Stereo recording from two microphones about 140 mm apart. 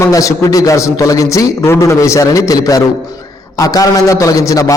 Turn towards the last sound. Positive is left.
turn(degrees=25)  # may be behind; listen again after turning